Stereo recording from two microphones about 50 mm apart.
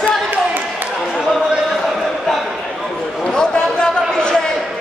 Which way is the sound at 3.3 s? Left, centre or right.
Centre.